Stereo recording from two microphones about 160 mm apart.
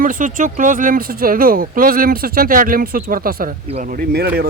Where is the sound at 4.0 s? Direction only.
85° right.